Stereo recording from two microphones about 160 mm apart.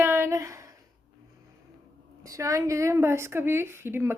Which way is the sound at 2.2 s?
20° right (ahead or behind).